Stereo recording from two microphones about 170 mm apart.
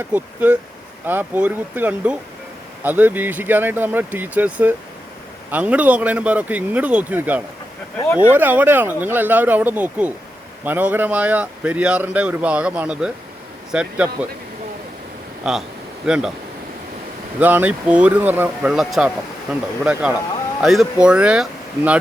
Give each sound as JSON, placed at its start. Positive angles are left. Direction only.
{"t": 0.1, "sound": "speech", "side_deg": -10}
{"t": 7.9, "sound": "speech", "side_deg": 10}
{"t": 8.2, "sound": "speech", "side_deg": -10}
{"t": 15.4, "sound": "speech", "side_deg": -5}
{"t": 17.4, "sound": "speech", "side_deg": -10}